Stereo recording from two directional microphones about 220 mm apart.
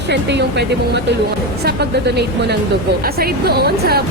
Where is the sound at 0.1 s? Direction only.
50° right (ahead or behind).